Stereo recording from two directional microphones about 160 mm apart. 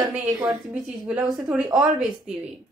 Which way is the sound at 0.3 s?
25° right (ahead or behind).